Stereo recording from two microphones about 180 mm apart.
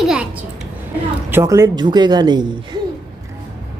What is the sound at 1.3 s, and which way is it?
Speech, 15° right (ahead or behind).